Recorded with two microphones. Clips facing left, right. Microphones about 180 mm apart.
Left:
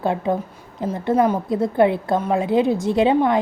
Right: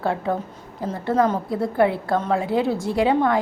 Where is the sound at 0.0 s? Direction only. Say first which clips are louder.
Left 2 dB; 20° left (ahead or behind).